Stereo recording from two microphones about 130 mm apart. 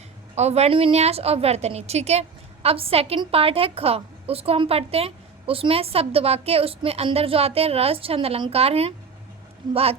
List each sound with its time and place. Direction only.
0.3 s a woman's voice: 55° right (ahead or behind)